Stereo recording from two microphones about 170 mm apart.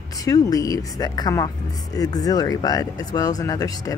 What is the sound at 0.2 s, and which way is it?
Speech, 20° left (ahead or behind).